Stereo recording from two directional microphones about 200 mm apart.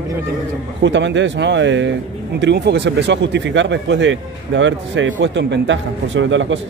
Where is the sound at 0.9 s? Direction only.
65° right (ahead or behind).